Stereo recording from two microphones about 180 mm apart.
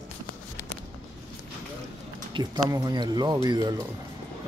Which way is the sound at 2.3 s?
20° right (ahead or behind).